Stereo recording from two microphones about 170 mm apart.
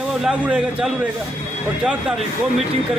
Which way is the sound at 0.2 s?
5° right (ahead or behind).